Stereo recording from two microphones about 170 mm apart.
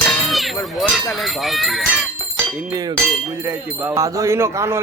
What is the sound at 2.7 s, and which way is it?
Chink, 20° right (ahead or behind).